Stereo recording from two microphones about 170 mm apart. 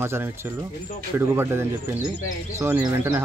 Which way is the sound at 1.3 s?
15° right (ahead or behind).